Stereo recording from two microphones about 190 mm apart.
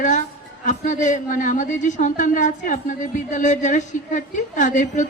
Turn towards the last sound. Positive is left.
turn(degrees=40)  # may be behind; listen again after turning